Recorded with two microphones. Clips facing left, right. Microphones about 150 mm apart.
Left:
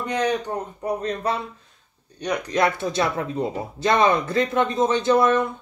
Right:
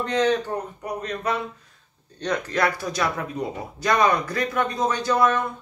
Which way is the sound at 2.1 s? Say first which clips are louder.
Left 2 dB; 10° left (ahead or behind).